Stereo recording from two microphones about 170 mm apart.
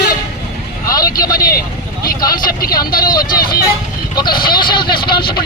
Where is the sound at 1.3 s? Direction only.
60° left (ahead or behind).